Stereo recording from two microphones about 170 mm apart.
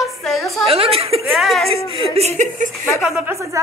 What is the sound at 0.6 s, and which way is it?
Speech, 35° right (ahead or behind).